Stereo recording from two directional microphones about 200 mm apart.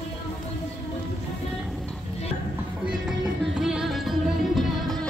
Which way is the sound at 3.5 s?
5° right (ahead or behind).